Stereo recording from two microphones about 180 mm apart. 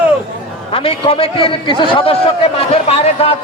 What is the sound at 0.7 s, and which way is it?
Speech, 30° left (ahead or behind).